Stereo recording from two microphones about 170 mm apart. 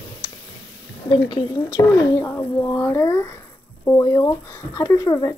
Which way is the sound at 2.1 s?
10° left (ahead or behind).